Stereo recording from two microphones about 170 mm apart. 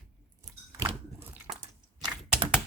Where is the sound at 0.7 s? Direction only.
15° right (ahead or behind).